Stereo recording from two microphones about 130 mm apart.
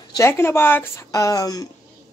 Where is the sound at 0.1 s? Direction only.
20° left (ahead or behind).